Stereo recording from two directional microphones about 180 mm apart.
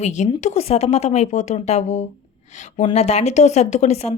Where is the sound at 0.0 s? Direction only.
40° left (ahead or behind).